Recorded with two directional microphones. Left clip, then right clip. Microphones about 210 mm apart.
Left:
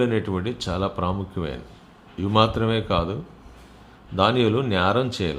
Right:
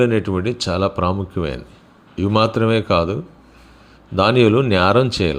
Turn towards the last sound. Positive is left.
turn(degrees=-25)  # may be behind; listen again after turning